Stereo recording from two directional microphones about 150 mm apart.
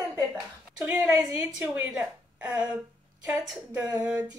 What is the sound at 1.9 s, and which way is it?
A woman's voice, 5° right (ahead or behind).